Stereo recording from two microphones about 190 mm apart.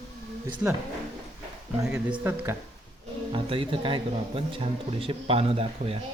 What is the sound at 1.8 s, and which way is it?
Speech, 5° right (ahead or behind).